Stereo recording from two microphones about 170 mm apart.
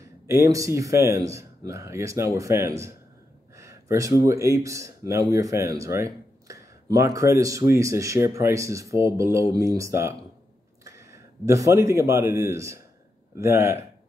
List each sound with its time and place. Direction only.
0.3 s a man's voice: 20° right (ahead or behind)